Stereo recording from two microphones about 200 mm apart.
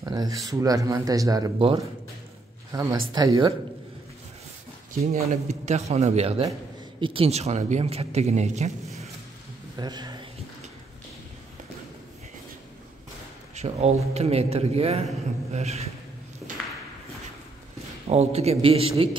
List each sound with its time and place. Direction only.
0.0 s a sound: 20° right (ahead or behind)
0.5 s speech: 15° right (ahead or behind)
5.1 s a man's voice: 35° right (ahead or behind)
9.8 s speech: 20° right (ahead or behind)
13.6 s a man's voice: 35° right (ahead or behind)
18.0 s a man's voice: 30° right (ahead or behind)